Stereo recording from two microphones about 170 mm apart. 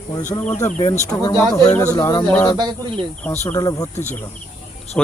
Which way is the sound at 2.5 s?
25° right (ahead or behind).